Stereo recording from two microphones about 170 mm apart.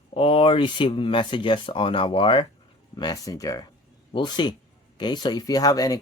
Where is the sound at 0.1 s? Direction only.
30° left (ahead or behind).